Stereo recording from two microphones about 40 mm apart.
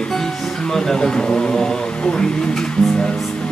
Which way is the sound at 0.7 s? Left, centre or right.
Centre.